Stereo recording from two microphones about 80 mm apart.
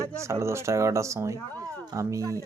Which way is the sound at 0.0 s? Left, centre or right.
Right.